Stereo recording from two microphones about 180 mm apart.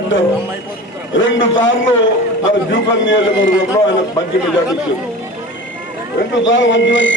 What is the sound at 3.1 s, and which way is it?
Speech, 90° left.